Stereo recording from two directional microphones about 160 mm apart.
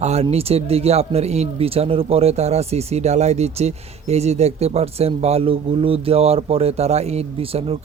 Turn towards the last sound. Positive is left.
turn(degrees=-35)  # may be behind; listen again after turning